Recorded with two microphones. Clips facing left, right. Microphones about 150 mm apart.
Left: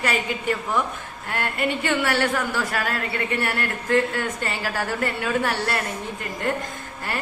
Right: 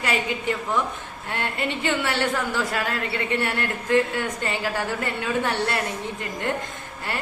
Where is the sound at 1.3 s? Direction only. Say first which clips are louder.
Left 2 dB; 25° right (ahead or behind).